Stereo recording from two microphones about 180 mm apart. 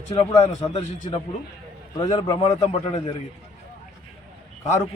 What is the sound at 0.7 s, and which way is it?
A man's voice, 35° left (ahead or behind).